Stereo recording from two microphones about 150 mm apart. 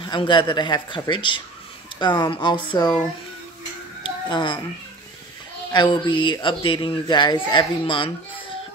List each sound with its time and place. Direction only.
0.0 s speech: 30° left (ahead or behind)
4.3 s speech: 30° left (ahead or behind)
5.7 s speech: 30° left (ahead or behind)